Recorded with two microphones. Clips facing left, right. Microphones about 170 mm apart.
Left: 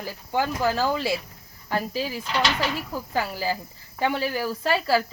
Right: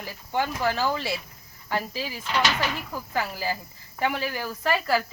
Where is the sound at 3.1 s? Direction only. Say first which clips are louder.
Left 2 dB; 35° left (ahead or behind).